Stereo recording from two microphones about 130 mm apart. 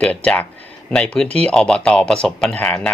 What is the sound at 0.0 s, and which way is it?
Speech, 10° left (ahead or behind).